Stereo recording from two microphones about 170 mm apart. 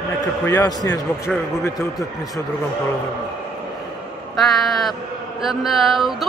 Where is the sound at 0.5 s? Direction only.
20° left (ahead or behind).